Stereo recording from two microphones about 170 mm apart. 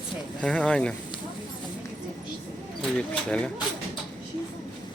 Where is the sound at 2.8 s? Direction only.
5° left (ahead or behind).